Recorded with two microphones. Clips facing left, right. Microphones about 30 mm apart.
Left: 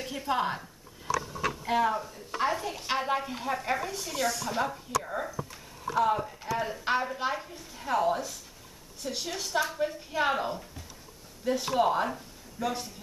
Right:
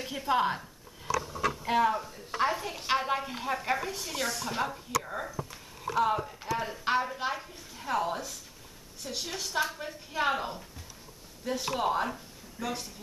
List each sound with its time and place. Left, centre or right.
0.0 s a woman's voice: centre